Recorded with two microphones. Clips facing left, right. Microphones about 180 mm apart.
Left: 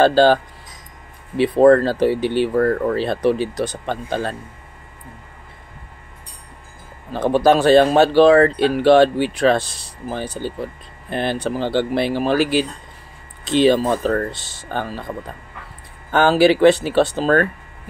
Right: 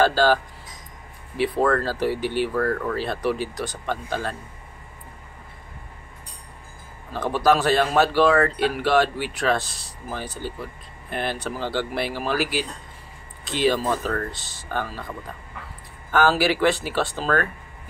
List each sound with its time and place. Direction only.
0.0 s speech: 25° left (ahead or behind)
7.1 s speech: 25° left (ahead or behind)
16.1 s speech: 25° left (ahead or behind)